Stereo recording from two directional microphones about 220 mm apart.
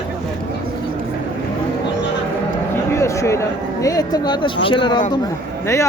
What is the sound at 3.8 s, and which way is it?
A man's voice, 15° left (ahead or behind).